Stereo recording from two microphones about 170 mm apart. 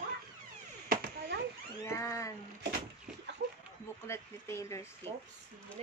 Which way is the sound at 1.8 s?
15° left (ahead or behind).